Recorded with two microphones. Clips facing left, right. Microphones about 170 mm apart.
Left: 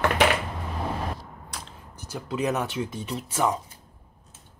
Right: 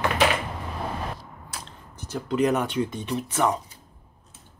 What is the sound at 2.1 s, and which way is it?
Speech, 5° left (ahead or behind).